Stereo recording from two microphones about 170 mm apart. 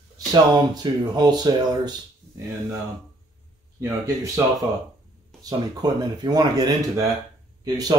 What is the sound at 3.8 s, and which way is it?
Speech, 20° right (ahead or behind).